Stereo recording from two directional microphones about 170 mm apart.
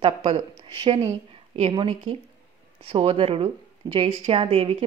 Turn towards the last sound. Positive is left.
turn(degrees=-35)  # may be behind; listen again after turning